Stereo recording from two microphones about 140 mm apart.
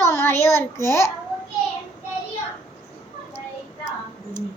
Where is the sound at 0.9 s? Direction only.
20° left (ahead or behind).